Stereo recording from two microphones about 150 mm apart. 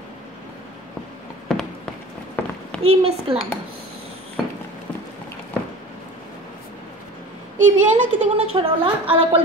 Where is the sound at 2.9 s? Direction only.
40° right (ahead or behind).